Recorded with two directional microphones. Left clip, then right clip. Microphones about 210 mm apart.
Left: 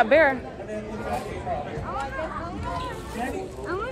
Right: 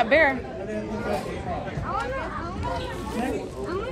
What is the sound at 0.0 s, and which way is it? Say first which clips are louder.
Speech: left 1 dB; 30° left (ahead or behind).